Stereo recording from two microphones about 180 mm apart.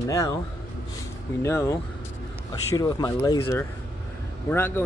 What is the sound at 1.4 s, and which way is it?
Speech, 15° left (ahead or behind).